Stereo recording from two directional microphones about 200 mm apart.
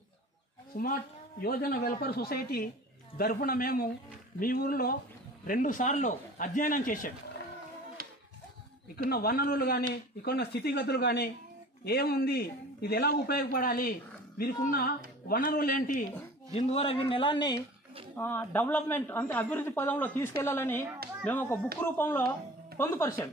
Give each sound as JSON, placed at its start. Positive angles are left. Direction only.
{"t": 0.7, "sound": "a man's voice", "side_deg": 40}
{"t": 8.0, "sound": "a sound", "side_deg": -45}
{"t": 9.1, "sound": "a man's voice", "side_deg": 50}
{"t": 16.5, "sound": "a man's voice", "side_deg": 30}
{"t": 18.1, "sound": "speech", "side_deg": 10}